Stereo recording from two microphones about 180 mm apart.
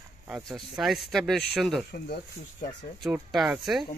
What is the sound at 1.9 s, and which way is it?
Speech, 60° left (ahead or behind).